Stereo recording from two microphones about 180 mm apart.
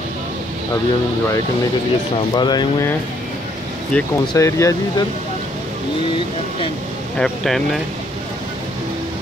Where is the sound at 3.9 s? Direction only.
5° left (ahead or behind).